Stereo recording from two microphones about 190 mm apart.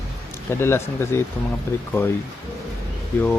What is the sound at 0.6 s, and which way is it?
Speech, 15° left (ahead or behind).